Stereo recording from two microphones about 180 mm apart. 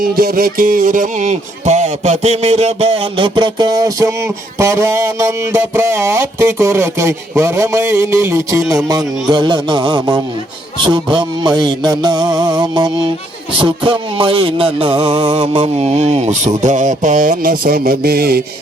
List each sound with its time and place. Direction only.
0.0 s music: 55° right (ahead or behind); by 16.5 s 40° right (ahead or behind)
16.6 s speech: 45° right (ahead or behind); by 18.4 s 60° right (ahead or behind)